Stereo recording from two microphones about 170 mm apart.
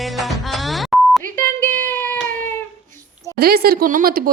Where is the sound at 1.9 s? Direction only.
10° left (ahead or behind).